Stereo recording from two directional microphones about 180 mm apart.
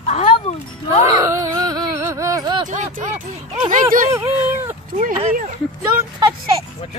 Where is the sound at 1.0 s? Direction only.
20° right (ahead or behind).